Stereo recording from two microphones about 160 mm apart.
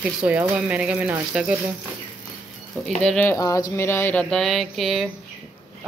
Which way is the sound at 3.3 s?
20° left (ahead or behind).